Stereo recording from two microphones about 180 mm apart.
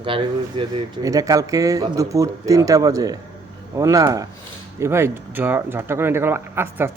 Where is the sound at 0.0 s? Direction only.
30° right (ahead or behind).